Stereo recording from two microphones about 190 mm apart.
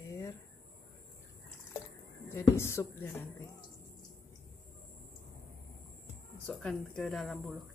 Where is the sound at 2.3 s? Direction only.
15° left (ahead or behind).